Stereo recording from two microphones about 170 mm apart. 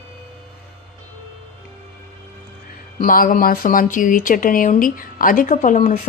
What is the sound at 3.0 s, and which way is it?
Speech, 60° left (ahead or behind).